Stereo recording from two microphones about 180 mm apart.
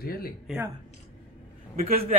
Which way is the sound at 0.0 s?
55° left (ahead or behind).